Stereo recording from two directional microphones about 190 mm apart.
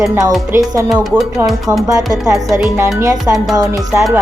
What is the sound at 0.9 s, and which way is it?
Speech, centre (ahead or behind).